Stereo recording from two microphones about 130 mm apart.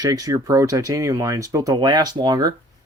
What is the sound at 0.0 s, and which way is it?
Speech, 25° right (ahead or behind).